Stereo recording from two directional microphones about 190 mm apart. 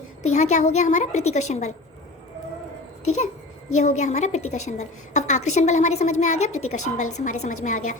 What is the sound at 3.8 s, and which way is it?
A woman's voice, 40° left (ahead or behind).